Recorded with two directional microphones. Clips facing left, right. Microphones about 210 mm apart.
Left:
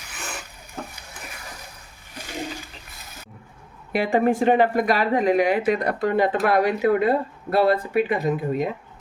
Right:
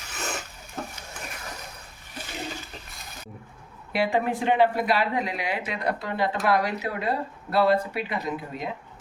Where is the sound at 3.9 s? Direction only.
45° left (ahead or behind).